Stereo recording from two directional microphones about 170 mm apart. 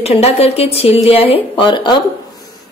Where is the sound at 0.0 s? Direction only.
35° left (ahead or behind).